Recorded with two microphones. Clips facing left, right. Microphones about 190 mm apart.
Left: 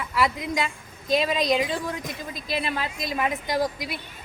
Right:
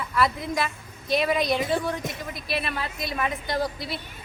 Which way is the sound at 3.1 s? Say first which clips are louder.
Left 2 dB; 15° left (ahead or behind).